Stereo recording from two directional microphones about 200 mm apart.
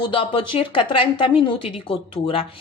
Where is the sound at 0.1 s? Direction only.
25° left (ahead or behind).